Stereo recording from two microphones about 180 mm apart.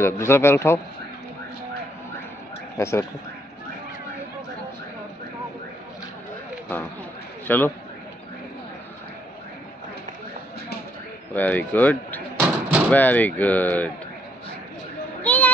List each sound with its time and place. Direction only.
0.0 s speech: 15° left (ahead or behind)
2.8 s speech: 15° left (ahead or behind)
7.4 s a man's voice: 10° left (ahead or behind)
11.3 s speech: 10° left (ahead or behind)
12.4 s slam: 10° right (ahead or behind)
12.9 s speech: 10° left (ahead or behind)
15.2 s a sound: 10° left (ahead or behind)